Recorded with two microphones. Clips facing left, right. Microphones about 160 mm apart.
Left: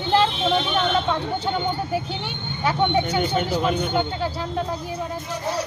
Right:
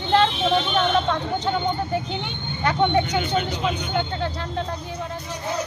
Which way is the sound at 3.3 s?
45° left (ahead or behind).